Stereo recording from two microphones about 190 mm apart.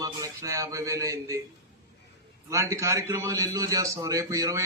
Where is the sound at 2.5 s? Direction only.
15° right (ahead or behind).